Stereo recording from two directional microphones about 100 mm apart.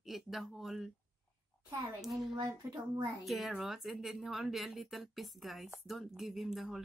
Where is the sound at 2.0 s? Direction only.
Centre (ahead or behind).